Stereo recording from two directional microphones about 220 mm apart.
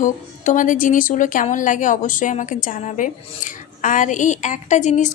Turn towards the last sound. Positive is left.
turn(degrees=35)  # may be behind; listen again after turning